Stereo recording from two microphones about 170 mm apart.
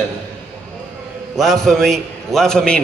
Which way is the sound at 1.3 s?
Centre (ahead or behind).